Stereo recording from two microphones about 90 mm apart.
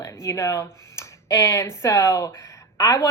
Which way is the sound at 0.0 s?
35° left (ahead or behind).